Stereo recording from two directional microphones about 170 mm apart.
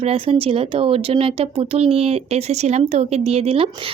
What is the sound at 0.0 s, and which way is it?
Speech, 35° right (ahead or behind).